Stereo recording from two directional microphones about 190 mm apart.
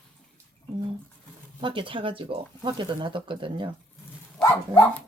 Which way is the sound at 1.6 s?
25° right (ahead or behind).